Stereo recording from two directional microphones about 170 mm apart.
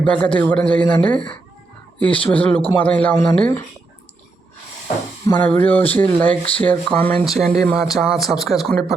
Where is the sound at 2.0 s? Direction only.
30° left (ahead or behind).